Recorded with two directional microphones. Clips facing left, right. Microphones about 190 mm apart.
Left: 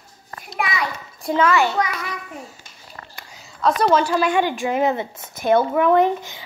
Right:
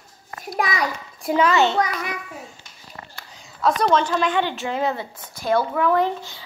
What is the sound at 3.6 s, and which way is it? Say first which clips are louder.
A woman's voice: left 2 dB; centre (ahead or behind).